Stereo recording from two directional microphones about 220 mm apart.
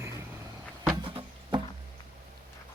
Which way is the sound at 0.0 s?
10° right (ahead or behind).